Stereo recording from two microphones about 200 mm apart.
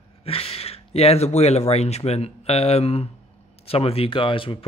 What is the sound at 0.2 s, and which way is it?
Speech, 30° left (ahead or behind).